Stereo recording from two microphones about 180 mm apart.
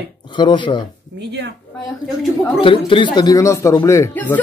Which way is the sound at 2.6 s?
30° left (ahead or behind).